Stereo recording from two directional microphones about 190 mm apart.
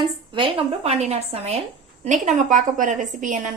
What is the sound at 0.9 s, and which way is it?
A woman's voice, 35° right (ahead or behind).